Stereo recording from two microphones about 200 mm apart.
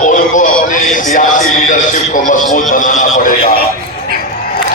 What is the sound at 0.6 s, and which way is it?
Music, 40° left (ahead or behind).